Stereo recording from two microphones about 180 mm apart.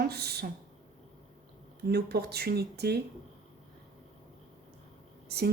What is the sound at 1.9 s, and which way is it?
Speech, 65° right (ahead or behind).